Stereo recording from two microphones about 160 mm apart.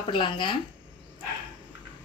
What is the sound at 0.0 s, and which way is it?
Speech, 30° left (ahead or behind).